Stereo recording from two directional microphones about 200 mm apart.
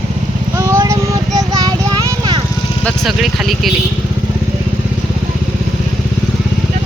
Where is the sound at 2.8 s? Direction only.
Centre (ahead or behind).